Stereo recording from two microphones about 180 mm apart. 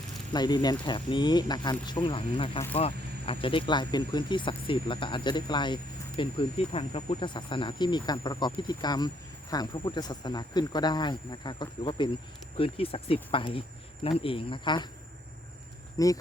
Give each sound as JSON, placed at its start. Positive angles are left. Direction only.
{"t": 0.3, "sound": "speech", "side_deg": 20}
{"t": 2.7, "sound": "vehicle", "side_deg": 30}
{"t": 3.4, "sound": "speech", "side_deg": 25}
{"t": 16.0, "sound": "speech", "side_deg": 20}